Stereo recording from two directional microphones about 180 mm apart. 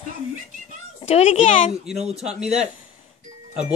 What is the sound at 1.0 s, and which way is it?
Speech, 35° left (ahead or behind).